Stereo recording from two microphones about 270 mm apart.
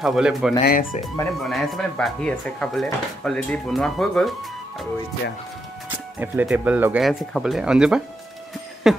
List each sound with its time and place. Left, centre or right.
0.0 s speech: centre
0.7 s speech: left
1.4 s speech: centre
5.9 s speech: centre
8.8 s a sound: centre